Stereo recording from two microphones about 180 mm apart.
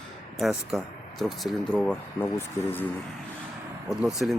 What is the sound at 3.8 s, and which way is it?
Speech, centre (ahead or behind).